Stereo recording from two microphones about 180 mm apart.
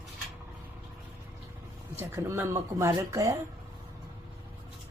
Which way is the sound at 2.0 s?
15° right (ahead or behind).